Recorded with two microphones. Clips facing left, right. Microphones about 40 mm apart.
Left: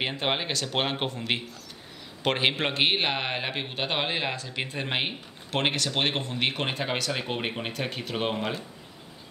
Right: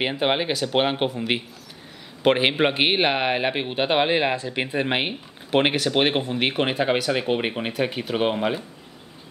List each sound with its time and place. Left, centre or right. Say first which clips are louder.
0.0 s speech: right 6 dB; centre